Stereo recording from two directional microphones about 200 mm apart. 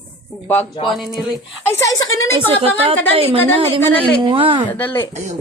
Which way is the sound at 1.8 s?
15° left (ahead or behind).